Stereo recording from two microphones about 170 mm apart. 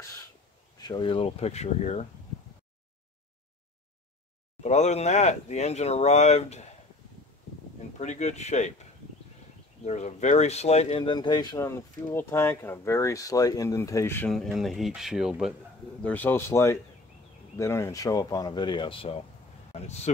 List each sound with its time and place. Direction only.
0.7 s speech: 25° left (ahead or behind); by 2.0 s 40° left (ahead or behind)
4.6 s speech: 40° left (ahead or behind)
8.0 s speech: 45° left (ahead or behind)
9.8 s speech: 40° left (ahead or behind); by 14.3 s 15° left (ahead or behind)
14.3 s speech: centre (ahead or behind)
16.0 s speech: 10° left (ahead or behind); by 19.2 s 35° left (ahead or behind)